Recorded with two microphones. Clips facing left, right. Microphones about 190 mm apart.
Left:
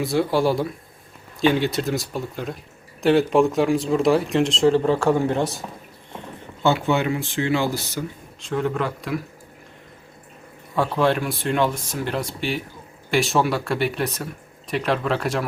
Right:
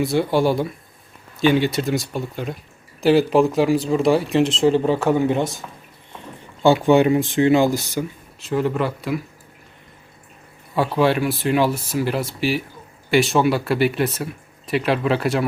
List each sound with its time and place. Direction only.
0.0 s speech: centre (ahead or behind)
6.6 s speech: 15° right (ahead or behind)
8.4 s speech: 5° right (ahead or behind)
10.8 s speech: 5° right (ahead or behind)